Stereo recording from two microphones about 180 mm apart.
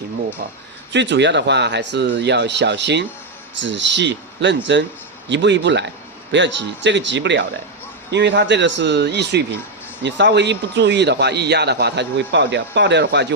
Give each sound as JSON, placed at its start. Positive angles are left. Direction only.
{"t": 0.9, "sound": "a man's voice", "side_deg": -80}
{"t": 3.6, "sound": "a man's voice", "side_deg": -90}